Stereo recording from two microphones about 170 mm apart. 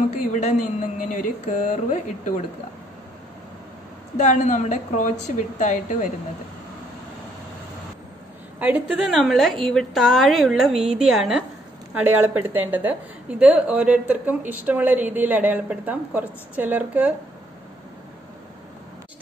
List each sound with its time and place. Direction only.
0.3 s speech: 45° left (ahead or behind)
4.2 s speech: 45° left (ahead or behind)
8.5 s a woman's voice: 10° right (ahead or behind)